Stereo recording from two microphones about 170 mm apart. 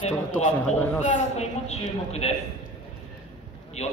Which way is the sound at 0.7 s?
10° left (ahead or behind).